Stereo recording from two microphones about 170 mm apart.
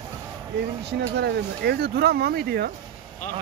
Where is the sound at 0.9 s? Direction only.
80° right.